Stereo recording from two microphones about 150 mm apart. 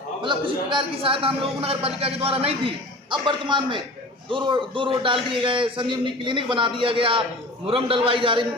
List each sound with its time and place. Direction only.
0.2 s a man's voice: 35° right (ahead or behind)